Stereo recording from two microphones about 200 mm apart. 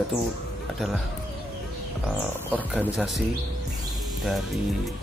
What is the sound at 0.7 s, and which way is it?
Speech, centre (ahead or behind).